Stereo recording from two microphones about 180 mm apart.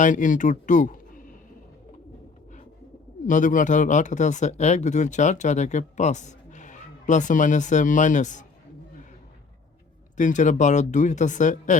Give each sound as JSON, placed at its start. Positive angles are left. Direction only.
{"t": 0.0, "sound": "speech", "side_deg": 45}
{"t": 3.2, "sound": "speech", "side_deg": 45}
{"t": 10.2, "sound": "speech", "side_deg": 45}